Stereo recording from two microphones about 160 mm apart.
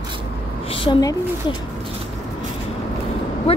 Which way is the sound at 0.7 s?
35° left (ahead or behind).